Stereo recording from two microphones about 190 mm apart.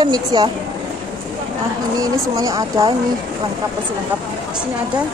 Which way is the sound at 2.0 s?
20° right (ahead or behind).